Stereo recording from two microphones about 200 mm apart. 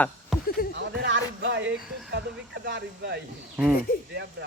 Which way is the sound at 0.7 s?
60° right (ahead or behind).